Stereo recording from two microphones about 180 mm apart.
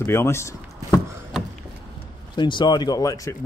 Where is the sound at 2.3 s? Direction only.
25° left (ahead or behind).